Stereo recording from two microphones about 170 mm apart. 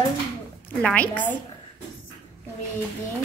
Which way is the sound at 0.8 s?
10° left (ahead or behind).